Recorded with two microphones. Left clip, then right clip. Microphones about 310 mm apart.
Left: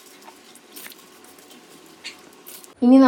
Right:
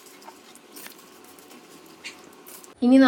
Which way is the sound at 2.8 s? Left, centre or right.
Centre.